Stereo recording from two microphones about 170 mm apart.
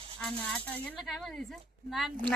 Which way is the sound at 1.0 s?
Centre (ahead or behind).